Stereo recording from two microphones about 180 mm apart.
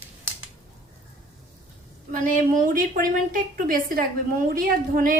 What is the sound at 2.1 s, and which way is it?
A woman's voice, 45° right (ahead or behind).